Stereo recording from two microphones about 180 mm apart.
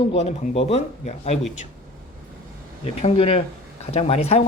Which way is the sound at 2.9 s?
35° left (ahead or behind).